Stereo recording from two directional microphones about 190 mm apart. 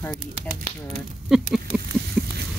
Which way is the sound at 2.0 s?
60° right (ahead or behind).